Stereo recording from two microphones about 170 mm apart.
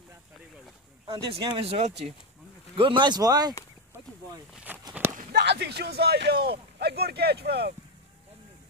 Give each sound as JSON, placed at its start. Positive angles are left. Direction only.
{"t": 1.3, "sound": "speech", "side_deg": -35}
{"t": 4.7, "sound": "walk", "side_deg": -10}
{"t": 5.3, "sound": "a man's voice", "side_deg": -75}